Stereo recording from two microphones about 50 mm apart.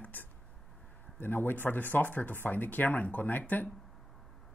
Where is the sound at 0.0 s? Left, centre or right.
Left.